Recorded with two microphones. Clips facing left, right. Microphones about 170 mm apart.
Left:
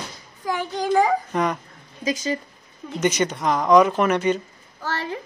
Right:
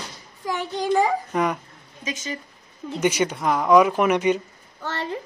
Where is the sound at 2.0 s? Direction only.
35° left (ahead or behind).